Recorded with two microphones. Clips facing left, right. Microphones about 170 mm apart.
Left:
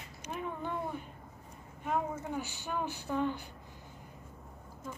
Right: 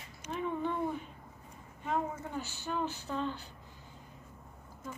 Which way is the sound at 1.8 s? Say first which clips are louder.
Left 1 dB; 10° left (ahead or behind).